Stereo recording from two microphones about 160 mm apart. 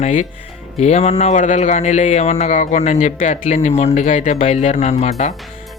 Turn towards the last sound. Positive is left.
turn(degrees=45)  # may be behind; listen again after turning